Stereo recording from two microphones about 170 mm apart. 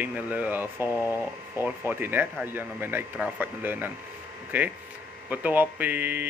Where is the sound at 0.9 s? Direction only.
20° left (ahead or behind).